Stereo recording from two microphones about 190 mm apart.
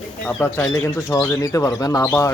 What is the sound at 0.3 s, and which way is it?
Speech, 10° left (ahead or behind).